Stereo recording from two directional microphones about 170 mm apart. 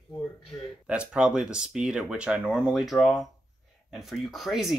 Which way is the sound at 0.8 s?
5° right (ahead or behind).